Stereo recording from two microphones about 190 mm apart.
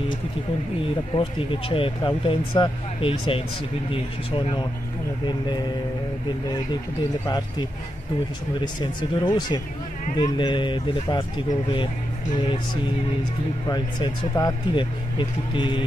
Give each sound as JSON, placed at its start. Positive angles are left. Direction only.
{"t": 1.1, "sound": "speech", "side_deg": 25}
{"t": 7.2, "sound": "speech", "side_deg": 20}
{"t": 9.2, "sound": "speech", "side_deg": 25}
{"t": 13.7, "sound": "speech", "side_deg": 20}